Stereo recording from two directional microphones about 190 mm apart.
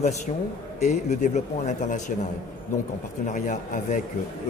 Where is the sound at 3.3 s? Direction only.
40° left (ahead or behind).